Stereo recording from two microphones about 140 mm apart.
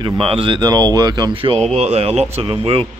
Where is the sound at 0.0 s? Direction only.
40° right (ahead or behind).